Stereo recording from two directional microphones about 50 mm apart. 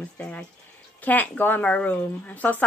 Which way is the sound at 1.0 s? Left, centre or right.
Left.